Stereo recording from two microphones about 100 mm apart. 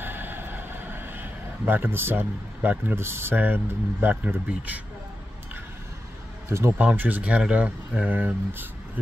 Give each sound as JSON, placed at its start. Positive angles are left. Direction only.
{"t": 0.0, "sound": "speech", "side_deg": -20}
{"t": 6.8, "sound": "speech", "side_deg": -15}